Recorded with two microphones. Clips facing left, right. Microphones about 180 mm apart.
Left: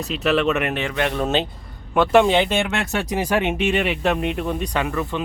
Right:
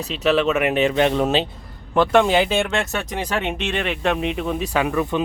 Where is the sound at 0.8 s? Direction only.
20° right (ahead or behind).